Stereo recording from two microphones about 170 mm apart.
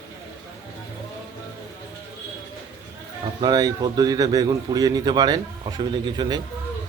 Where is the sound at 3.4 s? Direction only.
20° right (ahead or behind).